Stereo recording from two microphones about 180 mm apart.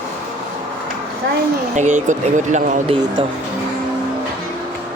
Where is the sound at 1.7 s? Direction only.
40° right (ahead or behind).